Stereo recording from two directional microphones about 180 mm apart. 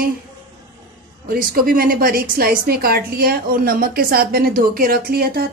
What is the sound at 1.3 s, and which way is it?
A woman's voice, 55° right (ahead or behind).